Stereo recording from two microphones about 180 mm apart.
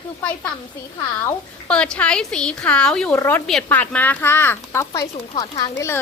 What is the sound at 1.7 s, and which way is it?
A woman's voice, 5° left (ahead or behind).